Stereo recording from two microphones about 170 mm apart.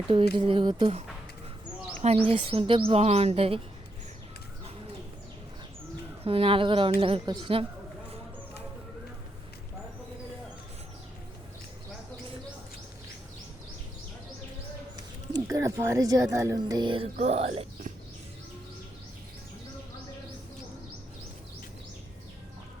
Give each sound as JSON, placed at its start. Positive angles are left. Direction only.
{"t": 0.3, "sound": "speech", "side_deg": -30}
{"t": 2.2, "sound": "speech", "side_deg": -35}
{"t": 6.2, "sound": "speech", "side_deg": -35}
{"t": 15.3, "sound": "speech", "side_deg": -20}
{"t": 17.2, "sound": "speech", "side_deg": -40}